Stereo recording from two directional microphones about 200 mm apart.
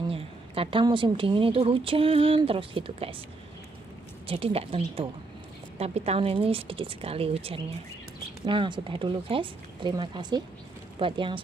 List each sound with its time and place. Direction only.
0.1 s a woman's voice: 25° right (ahead or behind)
4.3 s a woman's voice: 30° right (ahead or behind)